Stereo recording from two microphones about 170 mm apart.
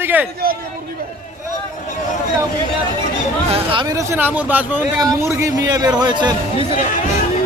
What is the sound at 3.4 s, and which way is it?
A man's voice, 30° right (ahead or behind).